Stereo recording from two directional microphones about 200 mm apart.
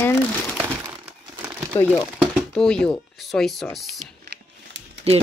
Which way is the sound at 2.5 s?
5° left (ahead or behind).